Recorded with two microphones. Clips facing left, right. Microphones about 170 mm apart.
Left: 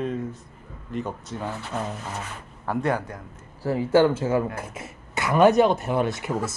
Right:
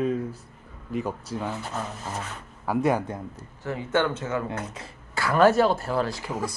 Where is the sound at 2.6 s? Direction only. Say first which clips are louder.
Right 2 dB; 10° right (ahead or behind).